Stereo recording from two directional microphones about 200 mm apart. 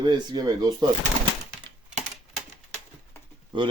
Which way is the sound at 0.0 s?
20° right (ahead or behind).